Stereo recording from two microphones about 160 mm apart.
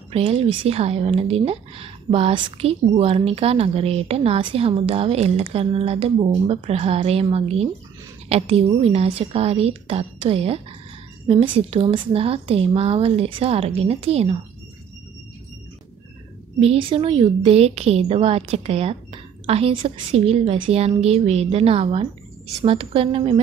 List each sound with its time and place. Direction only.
0.1 s speech: 40° right (ahead or behind)
16.5 s speech: 35° right (ahead or behind)